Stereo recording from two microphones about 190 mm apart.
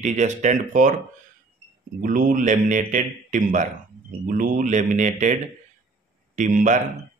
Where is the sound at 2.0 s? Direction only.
45° right (ahead or behind).